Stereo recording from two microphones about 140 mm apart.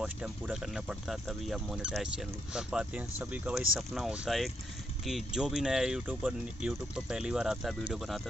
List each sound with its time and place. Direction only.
0.0 s speech: 5° right (ahead or behind)